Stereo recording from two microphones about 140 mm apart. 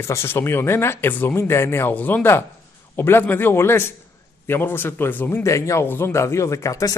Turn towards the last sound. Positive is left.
turn(degrees=25)  # may be behind; listen again after turning